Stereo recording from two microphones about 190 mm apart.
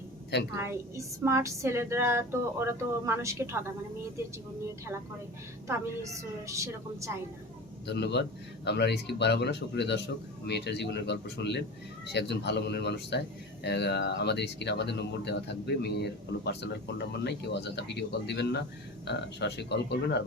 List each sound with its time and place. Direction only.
0.5 s speech: 15° right (ahead or behind)
5.6 s speech: 15° right (ahead or behind)
7.9 s a man's voice: 65° left (ahead or behind)